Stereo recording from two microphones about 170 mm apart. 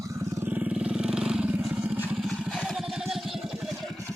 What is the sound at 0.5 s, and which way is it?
Vehicle, 5° right (ahead or behind).